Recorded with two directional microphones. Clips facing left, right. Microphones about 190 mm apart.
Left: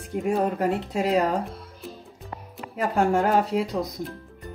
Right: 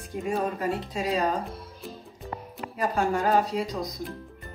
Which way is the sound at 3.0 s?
60° left (ahead or behind).